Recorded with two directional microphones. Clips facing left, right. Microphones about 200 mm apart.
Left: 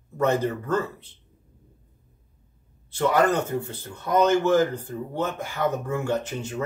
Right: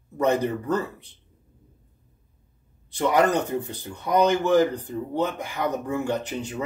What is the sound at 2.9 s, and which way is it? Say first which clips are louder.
Speech: even; 15° right (ahead or behind).